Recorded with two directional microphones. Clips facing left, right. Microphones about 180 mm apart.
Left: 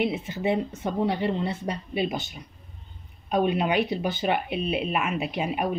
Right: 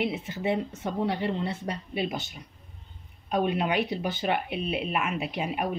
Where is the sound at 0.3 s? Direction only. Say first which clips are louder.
Left 2 dB; 15° left (ahead or behind).